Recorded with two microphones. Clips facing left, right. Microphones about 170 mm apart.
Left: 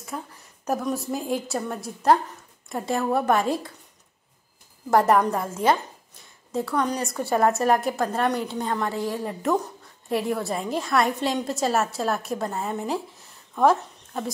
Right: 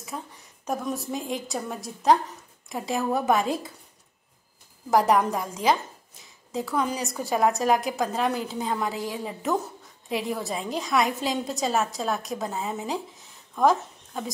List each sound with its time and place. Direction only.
0.0 s a woman's voice: centre (ahead or behind)
4.9 s a woman's voice: centre (ahead or behind)